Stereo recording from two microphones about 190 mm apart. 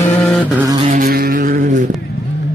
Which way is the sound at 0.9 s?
50° right (ahead or behind).